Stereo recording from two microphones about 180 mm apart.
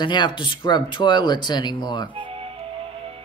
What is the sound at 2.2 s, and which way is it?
Music, 30° right (ahead or behind).